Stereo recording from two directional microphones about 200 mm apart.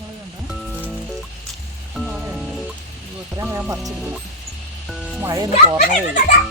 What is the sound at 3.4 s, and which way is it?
Speech, 10° right (ahead or behind).